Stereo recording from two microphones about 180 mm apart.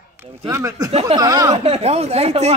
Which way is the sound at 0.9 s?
35° right (ahead or behind).